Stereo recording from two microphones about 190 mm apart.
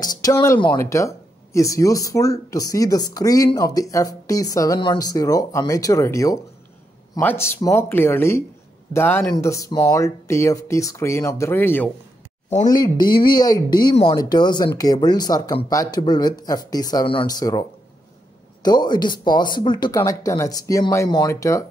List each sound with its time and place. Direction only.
0.0 s speech: 20° left (ahead or behind)